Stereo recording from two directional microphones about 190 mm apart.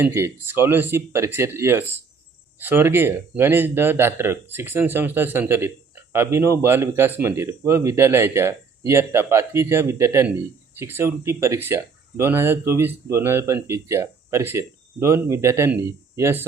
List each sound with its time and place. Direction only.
0.0 s speech: 10° right (ahead or behind)